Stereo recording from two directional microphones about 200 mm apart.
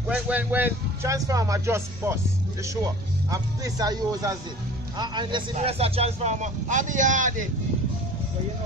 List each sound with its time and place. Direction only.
0.1 s speech: 10° right (ahead or behind); by 7.4 s 40° right (ahead or behind)